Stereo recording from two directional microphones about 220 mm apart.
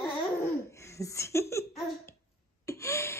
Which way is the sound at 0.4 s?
15° left (ahead or behind).